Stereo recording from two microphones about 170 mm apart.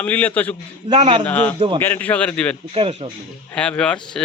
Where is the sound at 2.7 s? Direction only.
35° right (ahead or behind).